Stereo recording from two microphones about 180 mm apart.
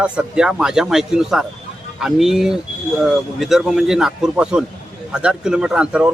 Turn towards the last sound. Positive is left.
turn(degrees=-5)  # may be behind; listen again after turning